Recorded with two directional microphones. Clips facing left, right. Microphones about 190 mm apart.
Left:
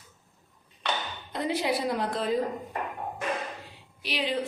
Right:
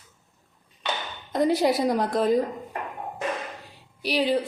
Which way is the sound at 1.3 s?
40° right (ahead or behind).